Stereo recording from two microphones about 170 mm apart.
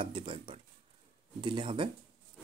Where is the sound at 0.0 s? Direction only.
30° right (ahead or behind).